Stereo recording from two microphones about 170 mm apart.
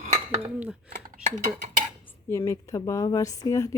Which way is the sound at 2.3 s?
15° left (ahead or behind).